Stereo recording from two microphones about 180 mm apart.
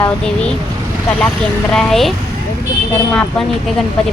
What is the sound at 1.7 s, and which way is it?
Speech, 5° left (ahead or behind).